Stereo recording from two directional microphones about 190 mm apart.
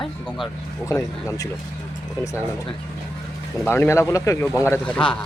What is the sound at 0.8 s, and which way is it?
Speech, 15° left (ahead or behind).